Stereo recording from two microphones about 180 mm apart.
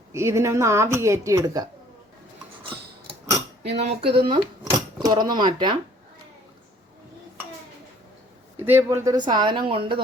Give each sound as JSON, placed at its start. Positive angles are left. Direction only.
{"t": 0.1, "sound": "a woman's voice", "side_deg": -15}
{"t": 3.8, "sound": "speech", "side_deg": -35}
{"t": 8.5, "sound": "speech", "side_deg": -10}